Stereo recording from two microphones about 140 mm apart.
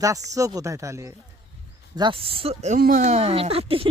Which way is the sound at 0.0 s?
25° right (ahead or behind).